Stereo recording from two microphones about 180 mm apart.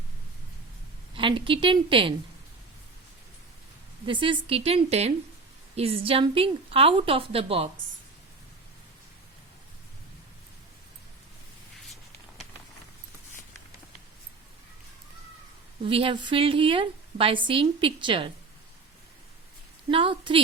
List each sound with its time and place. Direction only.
1.1 s a woman's voice: 30° right (ahead or behind)
4.0 s a woman's voice: 30° right (ahead or behind)
15.8 s a woman's voice: 30° right (ahead or behind)
19.9 s a woman's voice: 30° right (ahead or behind)